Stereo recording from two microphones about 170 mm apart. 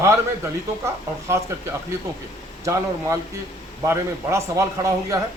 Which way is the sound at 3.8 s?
15° right (ahead or behind).